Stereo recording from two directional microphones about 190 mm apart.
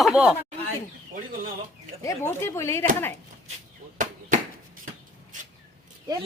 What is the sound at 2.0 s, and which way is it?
Speech, 15° left (ahead or behind).